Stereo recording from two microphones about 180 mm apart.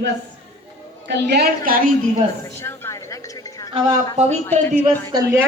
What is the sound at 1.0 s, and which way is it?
A woman's voice, 65° right (ahead or behind).